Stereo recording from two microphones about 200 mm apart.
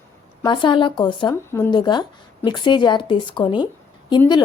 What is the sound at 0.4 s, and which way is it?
Speech, 25° left (ahead or behind).